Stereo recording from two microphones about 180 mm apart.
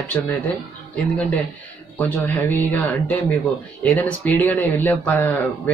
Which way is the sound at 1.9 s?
10° left (ahead or behind).